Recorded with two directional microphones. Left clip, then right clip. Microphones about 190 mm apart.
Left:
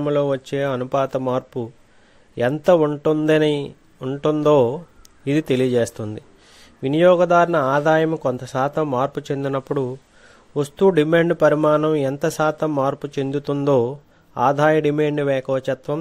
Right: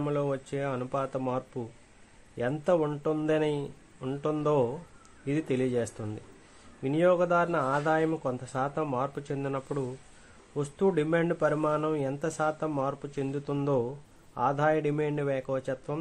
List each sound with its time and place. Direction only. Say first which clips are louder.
0.0 s speech: left 11 dB; 40° left (ahead or behind)